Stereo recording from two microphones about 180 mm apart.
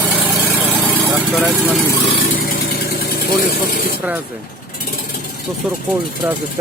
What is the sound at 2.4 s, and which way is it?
Vehicle, 60° left (ahead or behind).